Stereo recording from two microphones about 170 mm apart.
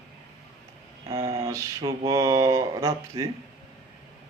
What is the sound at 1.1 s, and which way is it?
Mantra, 20° right (ahead or behind).